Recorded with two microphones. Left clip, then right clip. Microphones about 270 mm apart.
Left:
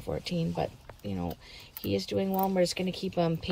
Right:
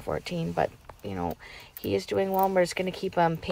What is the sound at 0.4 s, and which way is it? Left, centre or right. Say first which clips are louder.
Speech: right 5 dB; right.